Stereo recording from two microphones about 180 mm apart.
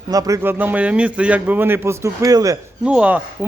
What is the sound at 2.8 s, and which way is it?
Speech, 5° right (ahead or behind).